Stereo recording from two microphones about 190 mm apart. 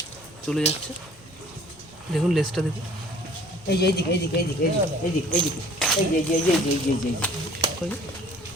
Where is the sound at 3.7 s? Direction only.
60° left (ahead or behind).